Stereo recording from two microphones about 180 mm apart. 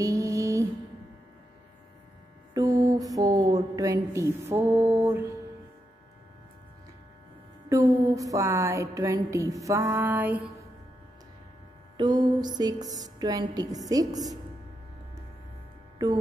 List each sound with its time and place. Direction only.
0.0 s mantra: 20° right (ahead or behind)
2.5 s mantra: 20° right (ahead or behind)
7.7 s a sound: 20° right (ahead or behind)
12.0 s speech: 25° right (ahead or behind)
16.0 s mantra: 20° right (ahead or behind)